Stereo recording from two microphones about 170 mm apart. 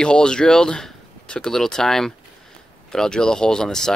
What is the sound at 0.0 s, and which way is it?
Speech, 5° left (ahead or behind).